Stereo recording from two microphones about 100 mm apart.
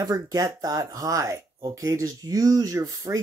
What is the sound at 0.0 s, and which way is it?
Speech, 35° right (ahead or behind).